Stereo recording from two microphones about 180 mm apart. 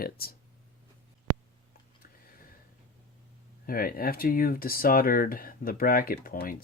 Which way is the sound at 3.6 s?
55° left (ahead or behind).